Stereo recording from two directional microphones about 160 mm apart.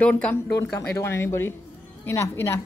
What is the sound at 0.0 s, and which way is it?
A woman's voice, 10° left (ahead or behind).